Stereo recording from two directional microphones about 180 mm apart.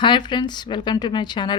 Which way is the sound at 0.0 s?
25° left (ahead or behind).